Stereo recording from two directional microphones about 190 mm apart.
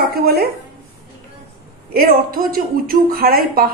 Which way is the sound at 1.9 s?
50° right (ahead or behind).